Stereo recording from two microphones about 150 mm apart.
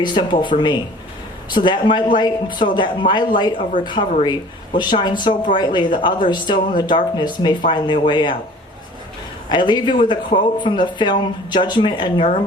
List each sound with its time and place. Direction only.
0.0 s speech: 30° left (ahead or behind)
9.5 s speech: 30° left (ahead or behind)